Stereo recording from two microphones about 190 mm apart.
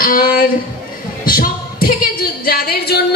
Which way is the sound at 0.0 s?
50° left (ahead or behind).